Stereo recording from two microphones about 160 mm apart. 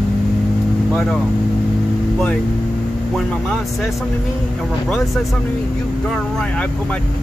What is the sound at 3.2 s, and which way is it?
Speech, 5° left (ahead or behind).